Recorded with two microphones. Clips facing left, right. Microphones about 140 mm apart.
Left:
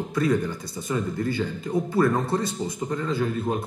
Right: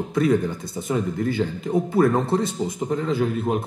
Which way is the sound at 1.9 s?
20° right (ahead or behind).